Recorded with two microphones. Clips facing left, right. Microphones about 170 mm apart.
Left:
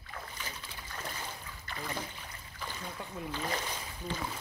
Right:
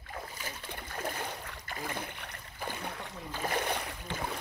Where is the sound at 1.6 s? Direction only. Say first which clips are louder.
Even; 45° right (ahead or behind).